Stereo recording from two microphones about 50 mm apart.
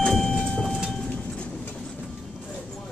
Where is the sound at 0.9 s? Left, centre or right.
Centre.